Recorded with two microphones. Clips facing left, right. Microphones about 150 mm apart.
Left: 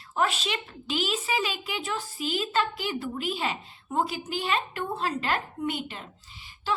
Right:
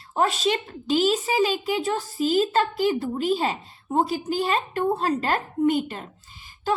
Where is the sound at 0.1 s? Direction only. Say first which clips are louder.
Right 5 dB; 40° right (ahead or behind).